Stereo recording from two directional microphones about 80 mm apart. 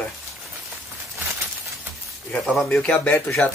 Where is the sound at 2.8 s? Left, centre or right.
Left.